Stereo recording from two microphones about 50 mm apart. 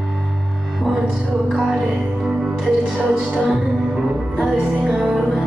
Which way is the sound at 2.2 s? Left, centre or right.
Centre.